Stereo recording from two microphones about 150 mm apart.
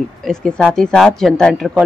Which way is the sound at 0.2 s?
5° left (ahead or behind).